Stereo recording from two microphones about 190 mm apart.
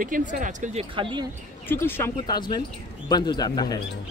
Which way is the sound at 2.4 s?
25° left (ahead or behind).